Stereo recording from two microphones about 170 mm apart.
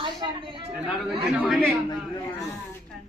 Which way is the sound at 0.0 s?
30° right (ahead or behind).